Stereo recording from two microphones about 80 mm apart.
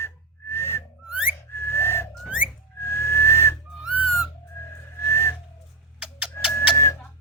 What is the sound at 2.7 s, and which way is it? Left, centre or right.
Whistling, left.